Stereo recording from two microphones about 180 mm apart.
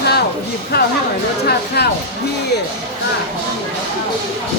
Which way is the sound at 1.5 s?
65° left (ahead or behind).